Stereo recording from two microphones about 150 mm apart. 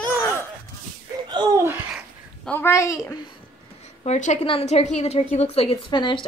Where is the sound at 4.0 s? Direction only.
50° left (ahead or behind).